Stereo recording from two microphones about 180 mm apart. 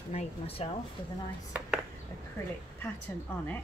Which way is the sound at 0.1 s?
35° left (ahead or behind).